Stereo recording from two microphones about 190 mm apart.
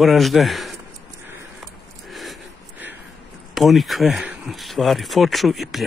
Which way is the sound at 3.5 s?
Centre (ahead or behind).